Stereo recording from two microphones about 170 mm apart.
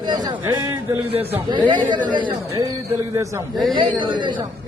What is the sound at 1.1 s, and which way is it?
A man's voice, 35° right (ahead or behind).